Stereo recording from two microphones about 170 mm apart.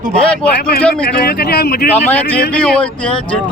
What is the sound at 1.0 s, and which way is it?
Speech, 65° left (ahead or behind).